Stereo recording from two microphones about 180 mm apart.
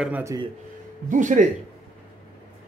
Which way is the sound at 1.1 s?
45° right (ahead or behind).